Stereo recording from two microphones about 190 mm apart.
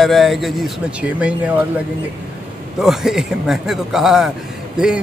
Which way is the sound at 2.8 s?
Centre (ahead or behind).